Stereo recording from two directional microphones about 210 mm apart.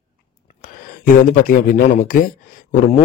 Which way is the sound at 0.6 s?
40° left (ahead or behind).